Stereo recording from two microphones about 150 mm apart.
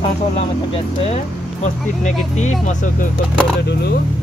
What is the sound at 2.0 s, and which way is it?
Speech, 50° left (ahead or behind).